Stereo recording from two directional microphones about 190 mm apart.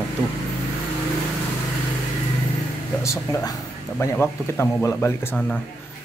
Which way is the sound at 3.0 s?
15° left (ahead or behind).